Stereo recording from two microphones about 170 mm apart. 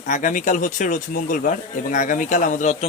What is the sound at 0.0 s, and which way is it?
Speech, 50° left (ahead or behind).